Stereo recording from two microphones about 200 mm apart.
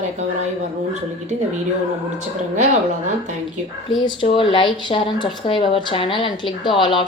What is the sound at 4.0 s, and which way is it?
Speech, 25° left (ahead or behind).